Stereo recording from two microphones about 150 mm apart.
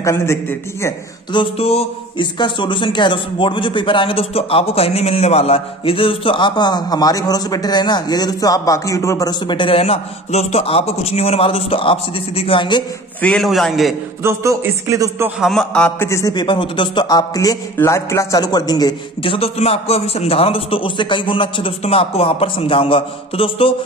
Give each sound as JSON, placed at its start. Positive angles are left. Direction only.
{"t": 0.0, "sound": "a man's voice", "side_deg": 15}
{"t": 1.3, "sound": "a man's voice", "side_deg": 40}
{"t": 2.3, "sound": "a man's voice", "side_deg": 30}
{"t": 13.2, "sound": "a man's voice", "side_deg": 10}
{"t": 14.2, "sound": "a man's voice", "side_deg": -20}
{"t": 15.4, "sound": "a man's voice", "side_deg": 5}
{"t": 16.1, "sound": "a man's voice", "side_deg": 20}